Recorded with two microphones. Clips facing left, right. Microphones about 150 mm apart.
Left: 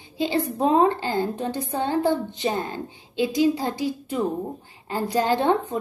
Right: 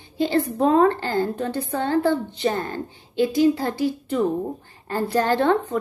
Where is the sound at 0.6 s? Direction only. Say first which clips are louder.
Right 1 dB; 20° left (ahead or behind).